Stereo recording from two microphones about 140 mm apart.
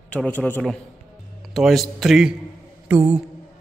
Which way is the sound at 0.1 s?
10° left (ahead or behind).